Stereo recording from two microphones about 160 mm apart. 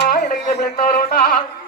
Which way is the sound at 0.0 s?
80° left.